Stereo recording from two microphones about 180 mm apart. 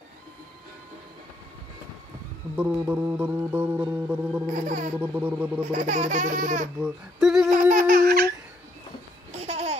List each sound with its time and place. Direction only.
2.5 s music: 10° right (ahead or behind)
4.5 s baby laughter: 45° right (ahead or behind)
5.0 s music: 10° right (ahead or behind)
5.7 s baby laughter: 45° right (ahead or behind)
6.8 s humming: 5° right (ahead or behind)
7.5 s a sound: 50° right (ahead or behind)
9.3 s babbling: 35° right (ahead or behind)